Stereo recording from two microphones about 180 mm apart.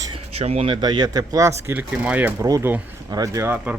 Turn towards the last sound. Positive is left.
turn(degrees=-15)  # may be behind; listen again after turning